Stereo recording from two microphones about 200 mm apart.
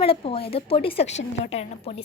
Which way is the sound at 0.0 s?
30° left (ahead or behind).